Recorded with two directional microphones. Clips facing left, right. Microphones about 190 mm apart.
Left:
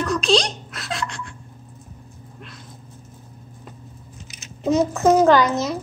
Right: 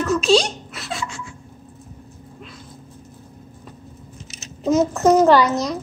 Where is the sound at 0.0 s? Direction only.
5° right (ahead or behind).